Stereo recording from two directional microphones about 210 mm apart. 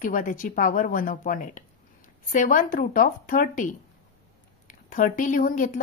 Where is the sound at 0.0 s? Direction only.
40° left (ahead or behind).